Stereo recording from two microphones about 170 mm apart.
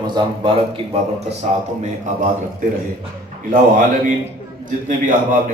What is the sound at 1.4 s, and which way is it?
A man's voice, 45° right (ahead or behind).